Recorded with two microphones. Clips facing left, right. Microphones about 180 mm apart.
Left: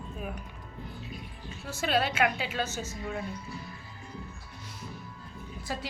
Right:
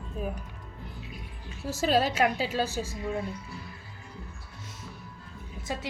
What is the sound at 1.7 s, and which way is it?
A woman's voice, 35° right (ahead or behind).